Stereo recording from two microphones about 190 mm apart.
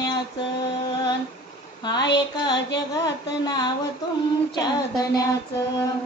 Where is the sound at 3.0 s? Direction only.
20° left (ahead or behind).